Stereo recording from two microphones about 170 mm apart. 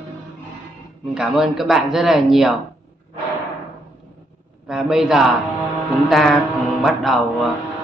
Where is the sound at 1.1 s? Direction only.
Centre (ahead or behind).